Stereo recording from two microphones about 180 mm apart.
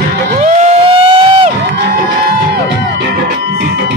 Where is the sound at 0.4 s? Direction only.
40° right (ahead or behind).